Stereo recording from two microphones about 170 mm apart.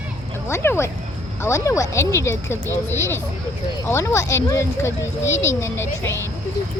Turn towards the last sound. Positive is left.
turn(degrees=15)  # may be behind; listen again after turning